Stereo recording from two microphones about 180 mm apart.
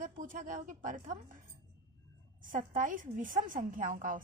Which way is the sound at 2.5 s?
45° right (ahead or behind).